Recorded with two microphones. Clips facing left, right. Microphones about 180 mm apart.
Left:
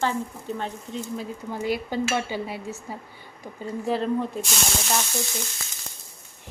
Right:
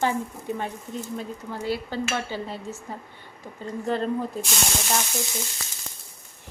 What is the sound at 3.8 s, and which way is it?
Speech, 5° left (ahead or behind).